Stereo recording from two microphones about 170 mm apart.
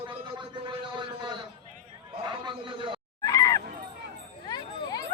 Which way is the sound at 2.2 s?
30° right (ahead or behind).